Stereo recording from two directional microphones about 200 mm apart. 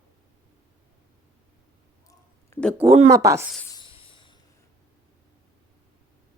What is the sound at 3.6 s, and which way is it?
Snake, 20° left (ahead or behind).